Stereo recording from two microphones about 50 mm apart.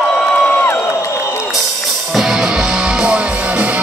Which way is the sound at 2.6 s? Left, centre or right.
Centre.